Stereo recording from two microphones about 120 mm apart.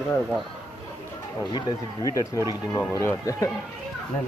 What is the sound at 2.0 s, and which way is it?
A man's voice, 25° left (ahead or behind).